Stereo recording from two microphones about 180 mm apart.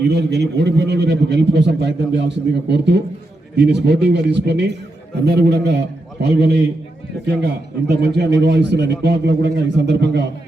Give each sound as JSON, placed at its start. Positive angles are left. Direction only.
{"t": 0.1, "sound": "a man's voice", "side_deg": -70}